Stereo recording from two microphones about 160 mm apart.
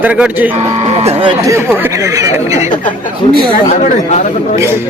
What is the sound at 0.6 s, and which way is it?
Speech, 40° right (ahead or behind).